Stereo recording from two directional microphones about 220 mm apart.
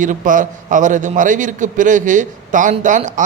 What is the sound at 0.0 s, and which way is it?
Speech, 35° right (ahead or behind).